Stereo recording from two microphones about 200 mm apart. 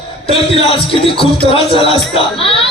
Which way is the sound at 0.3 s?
30° left (ahead or behind).